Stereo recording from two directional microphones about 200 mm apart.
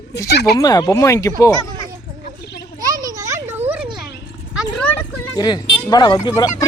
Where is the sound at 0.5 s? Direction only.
20° left (ahead or behind).